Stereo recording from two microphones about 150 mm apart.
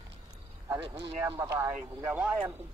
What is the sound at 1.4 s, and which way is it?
Speech, 20° right (ahead or behind).